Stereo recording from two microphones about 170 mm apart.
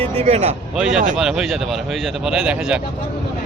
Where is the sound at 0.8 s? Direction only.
5° right (ahead or behind).